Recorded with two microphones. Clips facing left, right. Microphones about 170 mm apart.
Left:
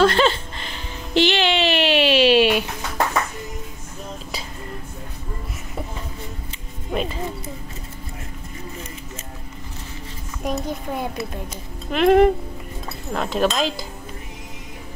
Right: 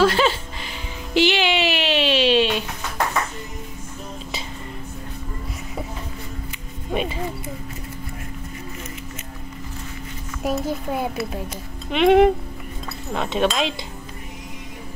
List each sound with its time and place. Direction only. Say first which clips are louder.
0.0 s a sound: left 1 dB; 5° right (ahead or behind)
6.9 s speech: even; 5° right (ahead or behind)
10.4 s speech: right 2 dB; 5° right (ahead or behind)